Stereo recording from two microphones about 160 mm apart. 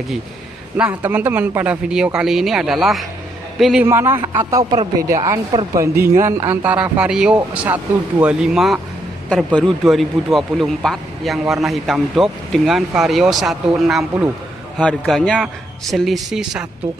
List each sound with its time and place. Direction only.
0.7 s a man's voice: 10° right (ahead or behind)
3.8 s a woman's voice: 15° right (ahead or behind)